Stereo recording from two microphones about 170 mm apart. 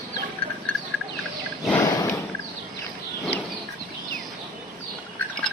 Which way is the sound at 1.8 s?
20° left (ahead or behind).